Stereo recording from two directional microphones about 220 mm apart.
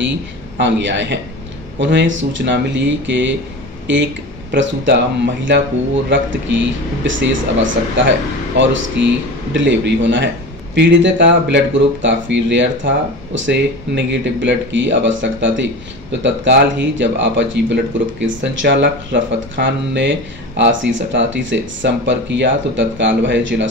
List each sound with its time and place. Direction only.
0.6 s speech: 55° right (ahead or behind)